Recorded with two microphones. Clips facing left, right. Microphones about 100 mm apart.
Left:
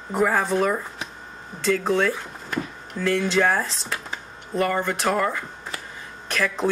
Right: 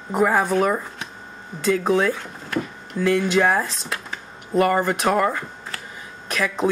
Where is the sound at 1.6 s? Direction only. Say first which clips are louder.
Right 2 dB; 5° right (ahead or behind).